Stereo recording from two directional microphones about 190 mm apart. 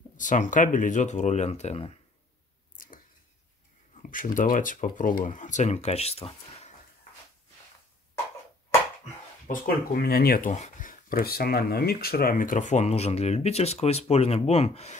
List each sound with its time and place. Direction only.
0.2 s speech: 40° left (ahead or behind)
2.8 s a sound: 45° left (ahead or behind)
4.0 s speech: 45° left (ahead or behind)
9.5 s speech: 50° left (ahead or behind); by 15.0 s 35° left (ahead or behind)